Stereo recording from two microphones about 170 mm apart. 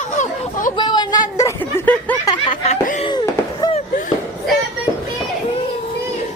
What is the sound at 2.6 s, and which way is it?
Laughter, 45° left (ahead or behind).